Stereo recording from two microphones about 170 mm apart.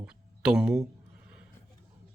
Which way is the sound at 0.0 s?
5° right (ahead or behind).